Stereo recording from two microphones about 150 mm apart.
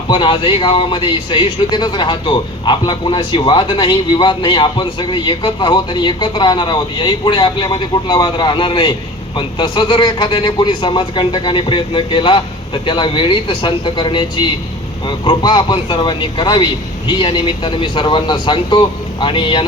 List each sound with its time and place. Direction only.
0.1 s a man's voice: 35° left (ahead or behind)